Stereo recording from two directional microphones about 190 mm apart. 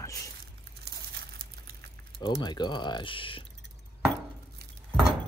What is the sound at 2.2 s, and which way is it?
Speech, 25° left (ahead or behind).